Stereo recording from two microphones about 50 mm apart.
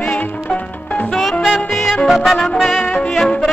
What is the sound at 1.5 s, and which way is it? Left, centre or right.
Music, centre.